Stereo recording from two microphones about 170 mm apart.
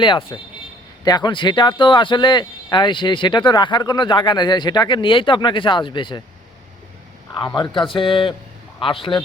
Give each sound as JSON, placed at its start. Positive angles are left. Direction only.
{"t": 0.0, "sound": "speech", "side_deg": 30}
{"t": 7.3, "sound": "a man's voice", "side_deg": 25}